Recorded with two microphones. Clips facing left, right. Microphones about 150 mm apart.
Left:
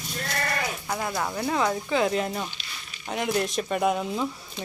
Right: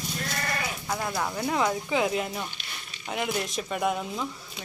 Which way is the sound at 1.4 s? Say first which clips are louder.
Left 1 dB; 15° right (ahead or behind).